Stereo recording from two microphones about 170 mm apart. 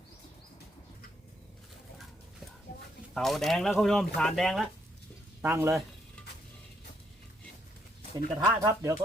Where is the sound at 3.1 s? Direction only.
Centre (ahead or behind).